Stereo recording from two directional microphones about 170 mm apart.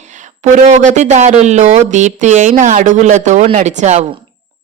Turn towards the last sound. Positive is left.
turn(degrees=-45)  # may be behind; listen again after turning